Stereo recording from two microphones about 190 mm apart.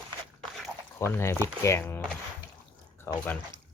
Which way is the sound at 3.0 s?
10° left (ahead or behind).